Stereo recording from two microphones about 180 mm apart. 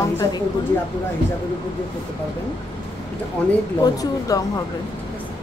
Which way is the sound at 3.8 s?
20° left (ahead or behind).